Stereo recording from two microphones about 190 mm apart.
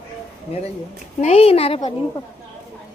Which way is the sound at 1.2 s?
35° left (ahead or behind).